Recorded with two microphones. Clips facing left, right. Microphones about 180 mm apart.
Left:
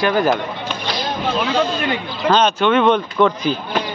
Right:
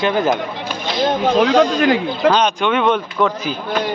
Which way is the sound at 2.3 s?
10° right (ahead or behind).